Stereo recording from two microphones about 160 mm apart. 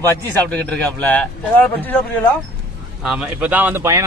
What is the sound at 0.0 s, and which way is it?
A man's voice, 10° left (ahead or behind).